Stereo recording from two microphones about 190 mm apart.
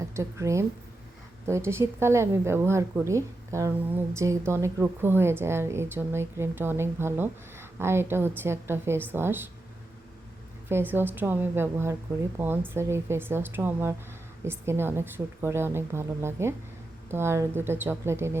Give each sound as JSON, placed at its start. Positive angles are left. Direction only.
{"t": 0.0, "sound": "a woman's voice", "side_deg": -15}
{"t": 10.7, "sound": "a woman's voice", "side_deg": -10}